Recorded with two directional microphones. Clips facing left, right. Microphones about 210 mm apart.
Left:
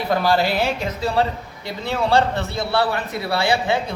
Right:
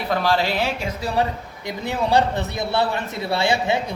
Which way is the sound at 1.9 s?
15° right (ahead or behind).